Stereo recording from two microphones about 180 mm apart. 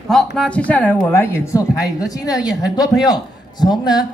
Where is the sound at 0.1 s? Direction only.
Centre (ahead or behind).